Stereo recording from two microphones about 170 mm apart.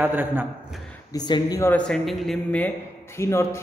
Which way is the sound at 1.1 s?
25° left (ahead or behind).